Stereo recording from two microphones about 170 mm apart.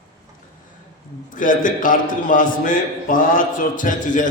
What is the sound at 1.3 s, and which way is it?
A man's voice, 50° left (ahead or behind).